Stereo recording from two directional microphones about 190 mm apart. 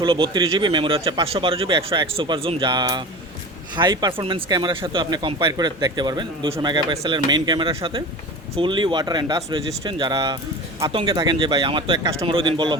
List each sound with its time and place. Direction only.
0.0 s speech: 25° right (ahead or behind)